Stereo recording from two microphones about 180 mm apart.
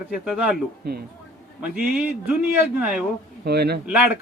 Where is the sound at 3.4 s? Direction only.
65° right (ahead or behind).